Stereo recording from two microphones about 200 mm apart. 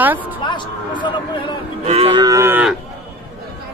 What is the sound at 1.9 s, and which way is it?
Cattle, 30° right (ahead or behind).